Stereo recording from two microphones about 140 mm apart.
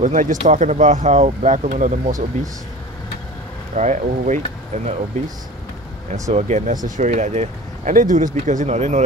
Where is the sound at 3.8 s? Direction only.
60° right (ahead or behind).